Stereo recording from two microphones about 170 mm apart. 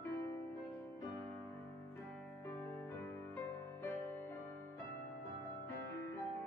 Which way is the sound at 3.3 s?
15° left (ahead or behind).